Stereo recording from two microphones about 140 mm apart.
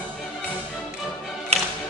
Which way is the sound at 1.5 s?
50° right (ahead or behind).